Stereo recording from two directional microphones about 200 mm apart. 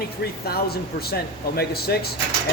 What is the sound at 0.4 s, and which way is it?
Speech, 50° left (ahead or behind).